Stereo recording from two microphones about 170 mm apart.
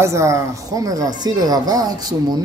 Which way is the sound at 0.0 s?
15° right (ahead or behind).